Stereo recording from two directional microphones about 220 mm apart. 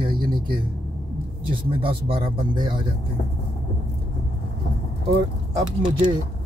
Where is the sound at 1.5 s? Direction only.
25° right (ahead or behind).